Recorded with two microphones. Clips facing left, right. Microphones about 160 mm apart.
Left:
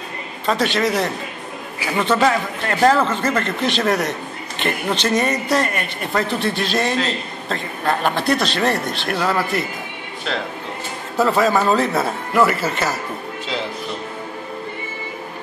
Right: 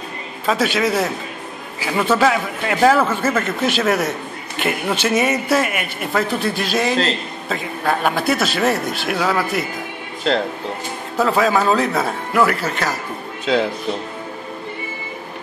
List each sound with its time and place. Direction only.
0.5 s speech: 5° right (ahead or behind)
11.1 s speech: centre (ahead or behind)